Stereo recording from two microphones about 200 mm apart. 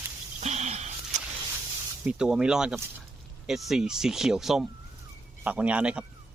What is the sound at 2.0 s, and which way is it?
Speech, 5° right (ahead or behind).